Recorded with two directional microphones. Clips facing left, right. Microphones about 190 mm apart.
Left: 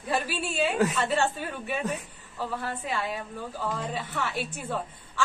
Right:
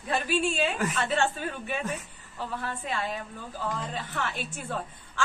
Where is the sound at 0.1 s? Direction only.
Centre (ahead or behind).